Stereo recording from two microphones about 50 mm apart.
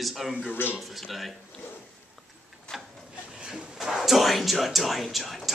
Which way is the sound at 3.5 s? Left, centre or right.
Centre.